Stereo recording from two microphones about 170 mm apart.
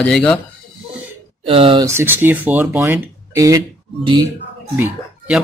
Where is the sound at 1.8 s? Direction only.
15° right (ahead or behind).